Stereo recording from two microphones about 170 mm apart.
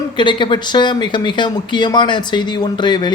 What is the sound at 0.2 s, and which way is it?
Speech, 30° left (ahead or behind).